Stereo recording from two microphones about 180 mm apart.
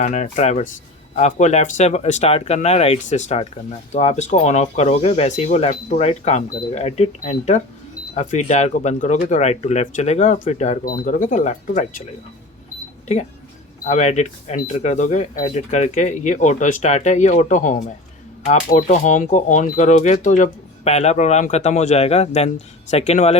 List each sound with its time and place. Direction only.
0.0 s speech: 40° left (ahead or behind)
13.8 s speech: 40° left (ahead or behind)